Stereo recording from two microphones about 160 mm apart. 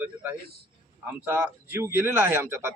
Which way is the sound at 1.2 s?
15° right (ahead or behind).